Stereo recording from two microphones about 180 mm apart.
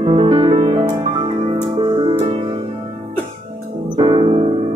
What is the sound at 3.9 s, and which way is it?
Piano, 25° right (ahead or behind).